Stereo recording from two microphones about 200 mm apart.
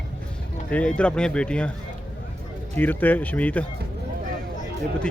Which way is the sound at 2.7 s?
10° left (ahead or behind).